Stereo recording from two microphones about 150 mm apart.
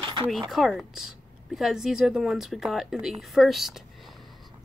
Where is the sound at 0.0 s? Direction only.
35° right (ahead or behind).